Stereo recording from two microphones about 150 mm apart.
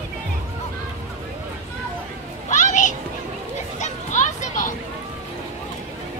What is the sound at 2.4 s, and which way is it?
Children playing, 55° left (ahead or behind).